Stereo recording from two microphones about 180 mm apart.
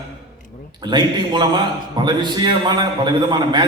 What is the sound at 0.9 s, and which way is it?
A man's voice, 25° right (ahead or behind).